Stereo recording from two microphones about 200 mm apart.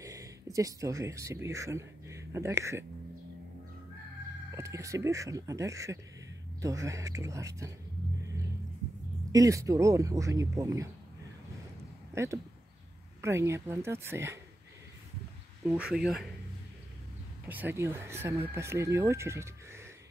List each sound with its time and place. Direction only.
0.0 s speech: 15° right (ahead or behind)
4.5 s speech: 15° right (ahead or behind)
9.3 s speech: 15° right (ahead or behind)
12.1 s speech: 15° right (ahead or behind)
15.6 s speech: 5° right (ahead or behind)
17.5 s speech: 10° right (ahead or behind)